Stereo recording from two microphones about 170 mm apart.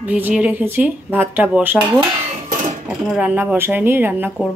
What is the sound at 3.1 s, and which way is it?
Speech, 5° right (ahead or behind).